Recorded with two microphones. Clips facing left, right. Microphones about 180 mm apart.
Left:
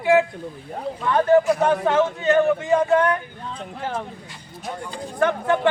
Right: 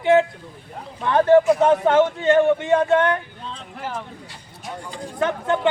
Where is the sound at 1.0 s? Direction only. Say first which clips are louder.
Right 2 dB; 25° right (ahead or behind).